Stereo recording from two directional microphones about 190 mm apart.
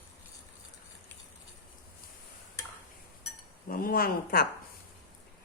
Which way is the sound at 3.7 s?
50° left (ahead or behind).